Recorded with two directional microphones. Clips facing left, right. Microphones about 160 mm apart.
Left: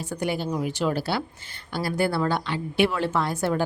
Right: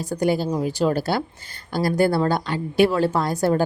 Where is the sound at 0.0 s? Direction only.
40° right (ahead or behind).